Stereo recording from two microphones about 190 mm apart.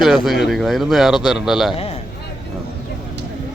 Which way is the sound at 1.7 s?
30° left (ahead or behind).